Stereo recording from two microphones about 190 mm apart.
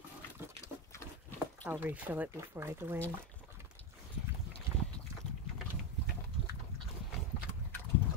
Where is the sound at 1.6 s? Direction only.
10° right (ahead or behind).